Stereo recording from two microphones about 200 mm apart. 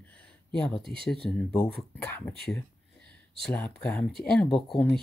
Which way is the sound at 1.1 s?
Centre (ahead or behind).